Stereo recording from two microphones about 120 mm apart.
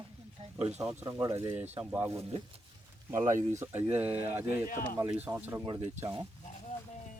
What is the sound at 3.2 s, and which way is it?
Speech, 90° right.